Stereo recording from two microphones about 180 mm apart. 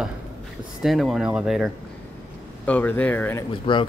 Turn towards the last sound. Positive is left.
turn(degrees=30)  # may be behind; listen again after turning